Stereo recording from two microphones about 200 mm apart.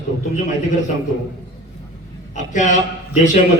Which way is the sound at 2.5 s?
40° left (ahead or behind).